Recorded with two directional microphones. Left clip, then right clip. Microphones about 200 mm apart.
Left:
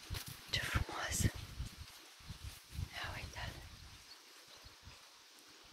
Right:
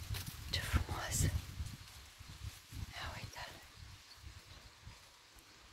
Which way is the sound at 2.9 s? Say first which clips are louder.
Left 2 dB; 15° right (ahead or behind).